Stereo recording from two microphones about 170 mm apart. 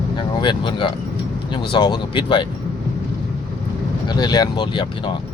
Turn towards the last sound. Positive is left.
turn(degrees=25)  # may be behind; listen again after turning